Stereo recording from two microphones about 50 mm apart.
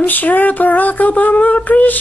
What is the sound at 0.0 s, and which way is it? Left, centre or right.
Speech, left.